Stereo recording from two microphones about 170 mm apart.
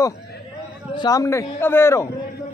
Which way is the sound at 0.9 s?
20° left (ahead or behind).